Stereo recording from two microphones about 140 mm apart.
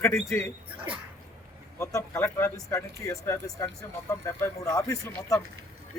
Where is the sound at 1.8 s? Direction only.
20° left (ahead or behind).